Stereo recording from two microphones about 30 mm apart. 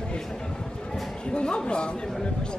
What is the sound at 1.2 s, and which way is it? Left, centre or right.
Speech, left.